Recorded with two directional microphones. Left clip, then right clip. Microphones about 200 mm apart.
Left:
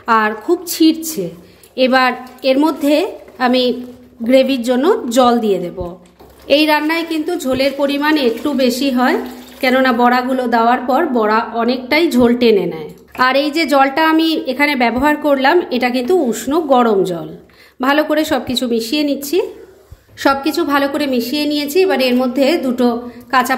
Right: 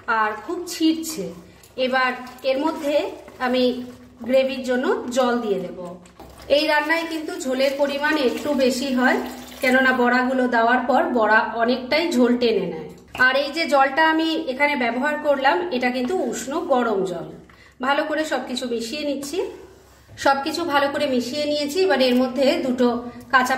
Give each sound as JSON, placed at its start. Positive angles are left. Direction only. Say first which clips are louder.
{"t": 0.0, "sound": "a woman's voice", "louder": "left 8 dB", "side_deg": 50}
{"t": 7.1, "sound": "a woman's voice", "louder": "left 8 dB", "side_deg": 50}
{"t": 20.2, "sound": "a woman's voice", "louder": "left 5 dB", "side_deg": 35}